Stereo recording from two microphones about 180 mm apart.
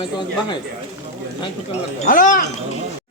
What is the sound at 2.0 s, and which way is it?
Speech, 50° left (ahead or behind).